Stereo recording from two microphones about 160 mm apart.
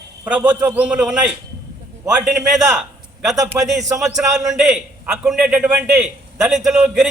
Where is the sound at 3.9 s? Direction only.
5° right (ahead or behind).